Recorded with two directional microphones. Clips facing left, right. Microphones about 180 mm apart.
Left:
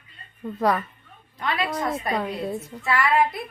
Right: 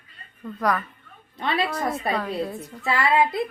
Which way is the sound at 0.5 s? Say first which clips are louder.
Left 2 dB; 25° left (ahead or behind).